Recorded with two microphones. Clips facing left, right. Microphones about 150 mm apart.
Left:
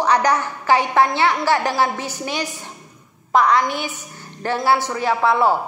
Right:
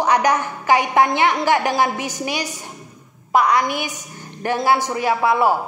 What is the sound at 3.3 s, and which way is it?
A woman's voice, 10° right (ahead or behind).